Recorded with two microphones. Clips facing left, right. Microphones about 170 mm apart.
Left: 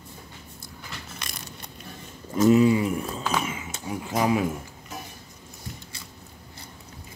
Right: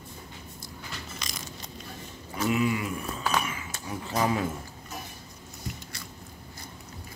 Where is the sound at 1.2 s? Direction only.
60° left (ahead or behind).